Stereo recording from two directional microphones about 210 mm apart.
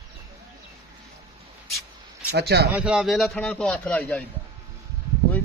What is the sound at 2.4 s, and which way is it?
Speech, 50° right (ahead or behind).